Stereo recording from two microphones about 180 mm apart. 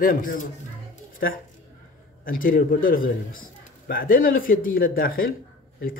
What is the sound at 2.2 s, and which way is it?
Speech, 50° left (ahead or behind).